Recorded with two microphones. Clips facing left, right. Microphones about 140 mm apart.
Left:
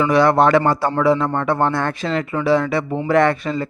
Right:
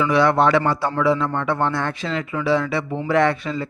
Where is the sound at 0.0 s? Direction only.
45° left (ahead or behind).